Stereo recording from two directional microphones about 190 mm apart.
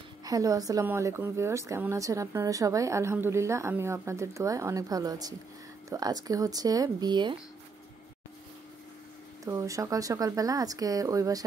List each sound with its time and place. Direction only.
0.2 s a woman's voice: 20° right (ahead or behind)
9.4 s a woman's voice: 15° right (ahead or behind)